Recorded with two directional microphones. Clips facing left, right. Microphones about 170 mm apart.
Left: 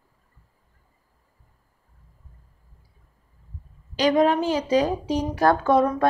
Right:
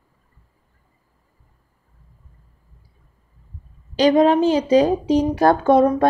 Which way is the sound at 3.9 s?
25° right (ahead or behind).